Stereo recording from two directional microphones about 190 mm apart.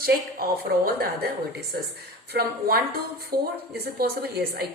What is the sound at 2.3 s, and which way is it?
A woman's voice, 50° right (ahead or behind).